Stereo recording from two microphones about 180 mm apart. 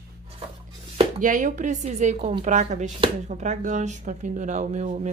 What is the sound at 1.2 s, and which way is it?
A woman's voice, 45° right (ahead or behind).